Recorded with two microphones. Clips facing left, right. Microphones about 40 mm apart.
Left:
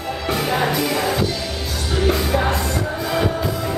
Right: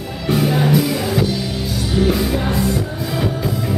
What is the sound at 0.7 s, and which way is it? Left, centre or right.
Music, centre.